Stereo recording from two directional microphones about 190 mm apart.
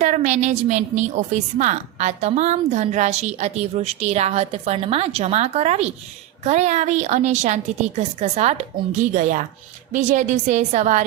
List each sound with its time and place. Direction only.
0.0 s a woman's voice: 40° right (ahead or behind)